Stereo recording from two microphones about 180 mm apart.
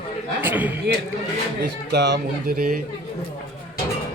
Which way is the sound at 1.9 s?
70° right (ahead or behind).